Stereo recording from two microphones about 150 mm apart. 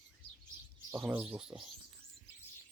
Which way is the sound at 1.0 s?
5° right (ahead or behind).